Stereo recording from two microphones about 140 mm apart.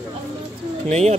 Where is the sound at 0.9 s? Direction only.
50° right (ahead or behind).